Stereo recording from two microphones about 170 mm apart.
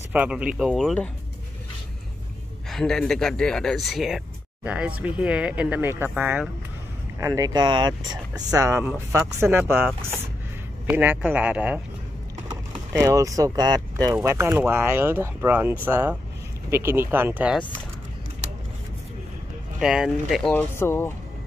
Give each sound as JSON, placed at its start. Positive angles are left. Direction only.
{"t": 0.1, "sound": "speech", "side_deg": -10}
{"t": 2.7, "sound": "speech", "side_deg": 5}
{"t": 10.9, "sound": "speech", "side_deg": -10}
{"t": 13.0, "sound": "speech", "side_deg": -20}
{"t": 19.8, "sound": "speech", "side_deg": -5}
{"t": 20.5, "sound": "speech", "side_deg": 15}